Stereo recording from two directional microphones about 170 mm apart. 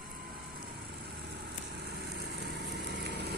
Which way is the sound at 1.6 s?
75° right (ahead or behind).